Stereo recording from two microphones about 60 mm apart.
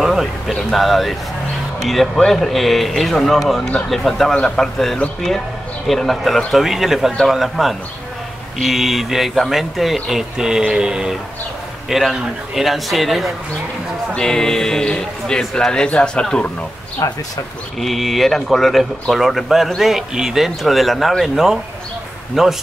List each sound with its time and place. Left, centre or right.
0.0 s a sound: centre
0.6 s speech: centre
11.9 s speech: centre
14.1 s speech: centre
17.0 s speech: left
17.7 s speech: centre